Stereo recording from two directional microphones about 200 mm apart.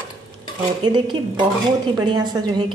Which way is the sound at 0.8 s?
25° right (ahead or behind).